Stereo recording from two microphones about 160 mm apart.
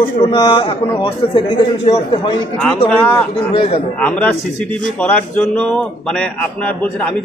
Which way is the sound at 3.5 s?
35° left (ahead or behind).